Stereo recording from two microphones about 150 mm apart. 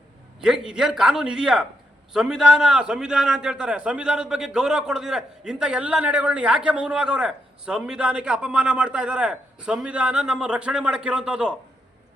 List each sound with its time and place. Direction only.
0.3 s a man's voice: 5° right (ahead or behind)